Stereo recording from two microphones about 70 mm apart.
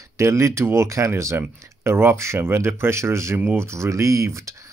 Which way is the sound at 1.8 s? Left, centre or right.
Right.